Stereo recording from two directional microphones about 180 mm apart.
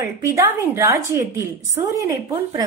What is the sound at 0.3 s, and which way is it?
A woman's voice, 15° right (ahead or behind).